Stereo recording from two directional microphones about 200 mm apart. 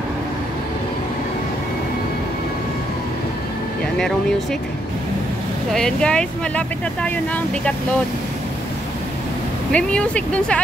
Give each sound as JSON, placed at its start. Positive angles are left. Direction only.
{"t": 5.7, "sound": "speech", "side_deg": 5}
{"t": 9.7, "sound": "speech", "side_deg": 5}